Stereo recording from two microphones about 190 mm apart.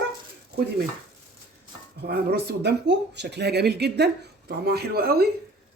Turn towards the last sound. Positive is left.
turn(degrees=-55)  # may be behind; listen again after turning